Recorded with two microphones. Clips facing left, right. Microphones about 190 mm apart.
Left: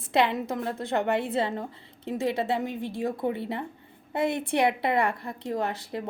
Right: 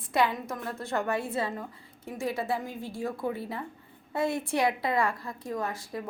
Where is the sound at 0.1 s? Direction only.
25° left (ahead or behind).